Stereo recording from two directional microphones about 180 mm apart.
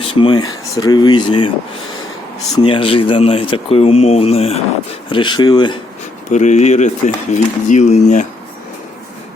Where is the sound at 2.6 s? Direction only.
30° left (ahead or behind).